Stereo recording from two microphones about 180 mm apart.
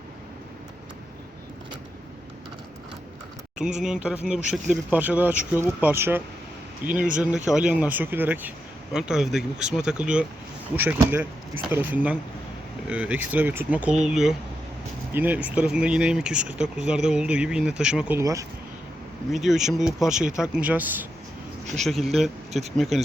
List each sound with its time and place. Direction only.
3.8 s speech: 5° right (ahead or behind)
18.2 s speech: 15° right (ahead or behind)
19.3 s a man's voice: centre (ahead or behind)